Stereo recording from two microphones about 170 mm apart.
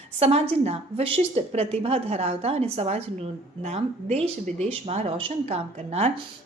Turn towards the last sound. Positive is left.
turn(degrees=-40)  # may be behind; listen again after turning